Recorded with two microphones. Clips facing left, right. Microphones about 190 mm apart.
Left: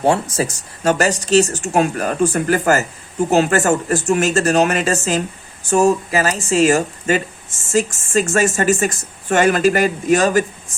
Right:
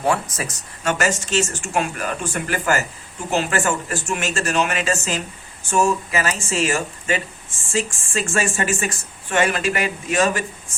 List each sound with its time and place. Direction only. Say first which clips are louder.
0.0 s speech: left 5 dB; 30° left (ahead or behind)